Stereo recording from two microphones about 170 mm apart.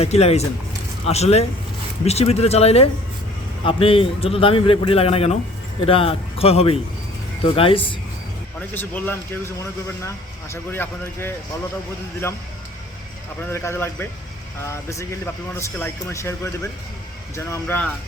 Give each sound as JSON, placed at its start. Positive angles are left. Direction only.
{"t": 0.0, "sound": "a man's voice", "side_deg": 40}
{"t": 8.5, "sound": "speech", "side_deg": 10}
{"t": 10.5, "sound": "speech", "side_deg": 15}
{"t": 13.5, "sound": "speech", "side_deg": 15}